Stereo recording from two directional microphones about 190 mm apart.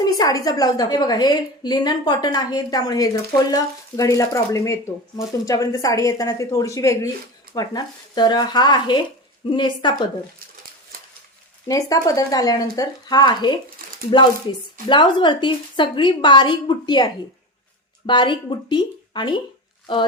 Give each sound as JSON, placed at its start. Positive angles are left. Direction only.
{"t": 0.0, "sound": "a woman's voice", "side_deg": 20}
{"t": 11.7, "sound": "a woman's voice", "side_deg": 20}
{"t": 14.8, "sound": "a woman's voice", "side_deg": 25}